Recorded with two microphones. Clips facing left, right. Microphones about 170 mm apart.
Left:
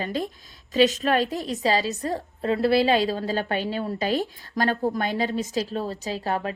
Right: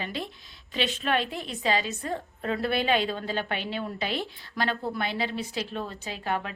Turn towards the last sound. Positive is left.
turn(degrees=35)  # may be behind; listen again after turning